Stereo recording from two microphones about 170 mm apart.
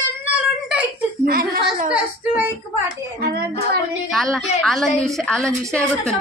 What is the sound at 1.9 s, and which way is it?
Speech, 10° right (ahead or behind).